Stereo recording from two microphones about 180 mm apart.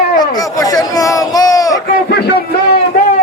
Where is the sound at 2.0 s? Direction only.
65° left (ahead or behind).